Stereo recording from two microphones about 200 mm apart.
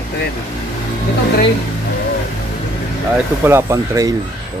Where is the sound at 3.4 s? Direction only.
15° right (ahead or behind).